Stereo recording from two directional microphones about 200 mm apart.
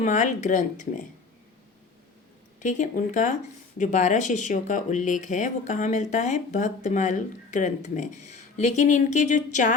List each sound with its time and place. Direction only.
0.0 s speech: 35° left (ahead or behind)
2.6 s speech: 40° left (ahead or behind)